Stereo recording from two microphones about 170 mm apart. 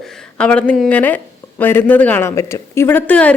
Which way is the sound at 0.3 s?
5° left (ahead or behind).